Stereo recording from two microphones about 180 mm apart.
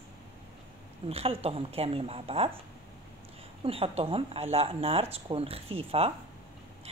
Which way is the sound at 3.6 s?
30° right (ahead or behind).